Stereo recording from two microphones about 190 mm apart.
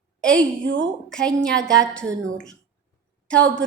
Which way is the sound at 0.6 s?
80° right.